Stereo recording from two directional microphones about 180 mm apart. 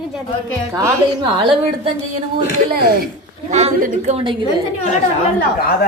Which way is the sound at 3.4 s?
40° right (ahead or behind).